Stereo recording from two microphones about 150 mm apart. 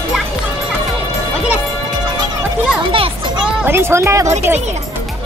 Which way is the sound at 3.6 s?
15° right (ahead or behind).